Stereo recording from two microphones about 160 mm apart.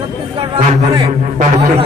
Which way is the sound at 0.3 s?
35° right (ahead or behind).